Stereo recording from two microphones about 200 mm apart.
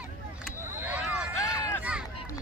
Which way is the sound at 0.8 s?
5° right (ahead or behind).